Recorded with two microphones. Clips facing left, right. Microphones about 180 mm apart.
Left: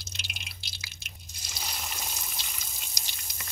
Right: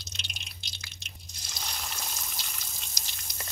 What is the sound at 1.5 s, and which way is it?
Water, 5° left (ahead or behind).